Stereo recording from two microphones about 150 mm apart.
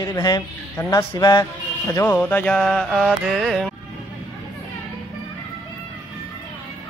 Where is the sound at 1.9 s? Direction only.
15° left (ahead or behind); by 3.7 s centre (ahead or behind).